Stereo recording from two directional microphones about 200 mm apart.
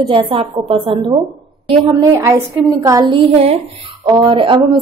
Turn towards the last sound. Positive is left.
turn(degrees=-25)  # may be behind; listen again after turning